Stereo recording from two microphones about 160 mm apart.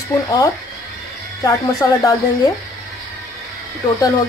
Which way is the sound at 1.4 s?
20° left (ahead or behind).